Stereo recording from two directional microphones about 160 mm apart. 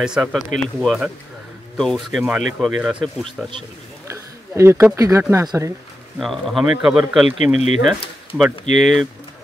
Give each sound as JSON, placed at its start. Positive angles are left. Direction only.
{"t": 0.0, "sound": "speech", "side_deg": -5}
{"t": 4.1, "sound": "a sound", "side_deg": -20}
{"t": 4.9, "sound": "speech", "side_deg": -20}
{"t": 6.1, "sound": "speech", "side_deg": 0}
{"t": 7.5, "sound": "speech", "side_deg": 45}
{"t": 8.7, "sound": "speech", "side_deg": 0}